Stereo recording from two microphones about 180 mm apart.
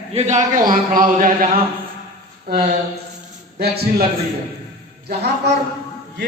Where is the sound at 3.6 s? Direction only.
60° right (ahead or behind).